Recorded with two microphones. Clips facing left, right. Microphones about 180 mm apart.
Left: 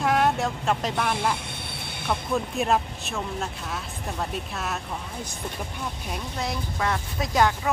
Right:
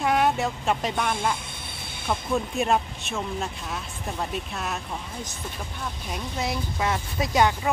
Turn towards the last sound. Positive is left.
turn(degrees=0)  # may be behind; listen again after turning